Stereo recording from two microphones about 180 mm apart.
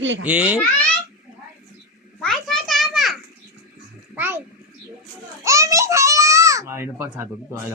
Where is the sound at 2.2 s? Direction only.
Centre (ahead or behind).